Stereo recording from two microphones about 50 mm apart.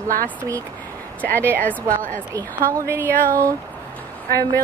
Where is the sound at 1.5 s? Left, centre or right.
Left.